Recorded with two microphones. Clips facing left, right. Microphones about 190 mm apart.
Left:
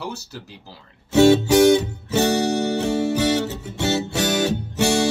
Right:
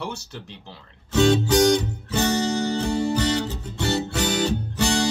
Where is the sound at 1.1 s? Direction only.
65° left (ahead or behind).